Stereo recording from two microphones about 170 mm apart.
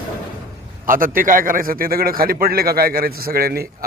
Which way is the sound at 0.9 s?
55° right (ahead or behind).